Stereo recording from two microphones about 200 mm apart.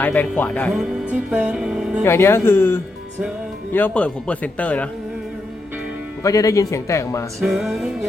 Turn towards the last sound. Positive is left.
turn(degrees=0)  # may be behind; listen again after turning